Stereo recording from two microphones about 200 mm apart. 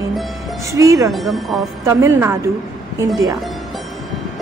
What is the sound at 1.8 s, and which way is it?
Speech, 15° right (ahead or behind).